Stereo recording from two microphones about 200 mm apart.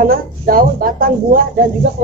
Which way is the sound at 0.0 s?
45° right (ahead or behind).